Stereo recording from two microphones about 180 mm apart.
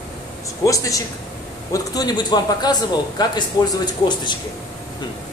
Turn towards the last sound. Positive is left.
turn(degrees=25)  # may be behind; listen again after turning